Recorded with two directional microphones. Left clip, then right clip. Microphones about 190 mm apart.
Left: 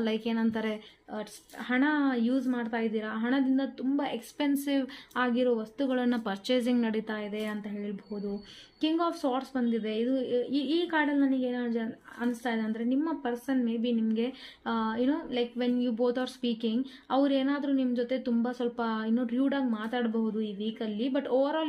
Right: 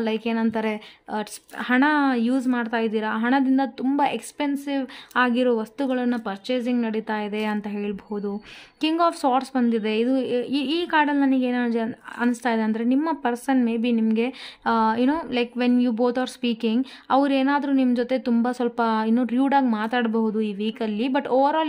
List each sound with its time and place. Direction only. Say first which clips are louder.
0.0 s a woman's voice: right 6 dB; 25° right (ahead or behind)
4.4 s speech: right 1 dB; 15° right (ahead or behind)
5.1 s a woman's voice: right 7 dB; 30° right (ahead or behind)
5.9 s a woman's voice: right 3 dB; 20° right (ahead or behind); by 21.6 s 35° right (ahead or behind)